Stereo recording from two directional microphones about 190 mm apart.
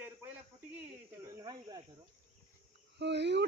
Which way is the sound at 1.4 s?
20° right (ahead or behind).